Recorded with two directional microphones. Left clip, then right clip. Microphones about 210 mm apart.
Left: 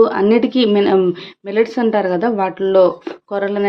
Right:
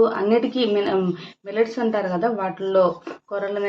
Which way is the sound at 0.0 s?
40° left (ahead or behind).